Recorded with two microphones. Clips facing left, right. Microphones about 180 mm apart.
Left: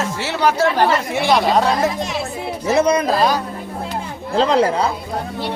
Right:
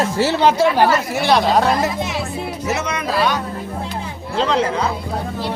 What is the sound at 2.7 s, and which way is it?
Speech, 35° left (ahead or behind).